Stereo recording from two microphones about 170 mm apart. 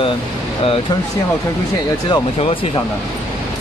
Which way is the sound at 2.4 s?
35° left (ahead or behind).